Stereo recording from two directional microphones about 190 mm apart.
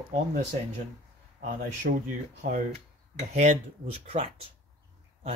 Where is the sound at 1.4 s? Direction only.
45° right (ahead or behind).